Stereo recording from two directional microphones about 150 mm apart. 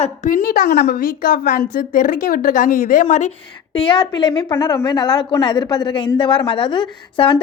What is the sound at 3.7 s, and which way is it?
A woman's voice, 35° left (ahead or behind).